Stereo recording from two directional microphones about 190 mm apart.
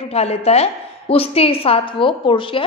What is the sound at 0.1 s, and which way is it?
A woman's voice, 35° left (ahead or behind).